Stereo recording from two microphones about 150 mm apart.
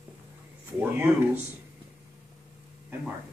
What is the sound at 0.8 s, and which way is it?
Speech, 10° right (ahead or behind).